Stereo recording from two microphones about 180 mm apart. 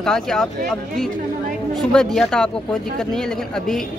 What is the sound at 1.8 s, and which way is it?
Speech, 5° left (ahead or behind).